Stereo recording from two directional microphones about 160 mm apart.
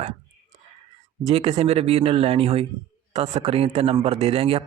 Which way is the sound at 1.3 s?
40° right (ahead or behind).